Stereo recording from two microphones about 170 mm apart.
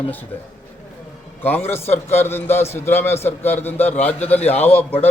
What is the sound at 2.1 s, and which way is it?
A man's voice, 15° left (ahead or behind).